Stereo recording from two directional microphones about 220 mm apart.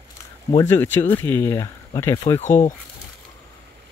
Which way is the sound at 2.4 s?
35° left (ahead or behind).